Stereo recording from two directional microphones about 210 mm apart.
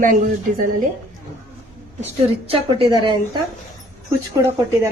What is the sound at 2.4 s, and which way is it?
Speech, 25° right (ahead or behind).